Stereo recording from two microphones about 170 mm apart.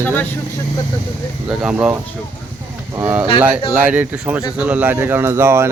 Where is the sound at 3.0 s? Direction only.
10° right (ahead or behind).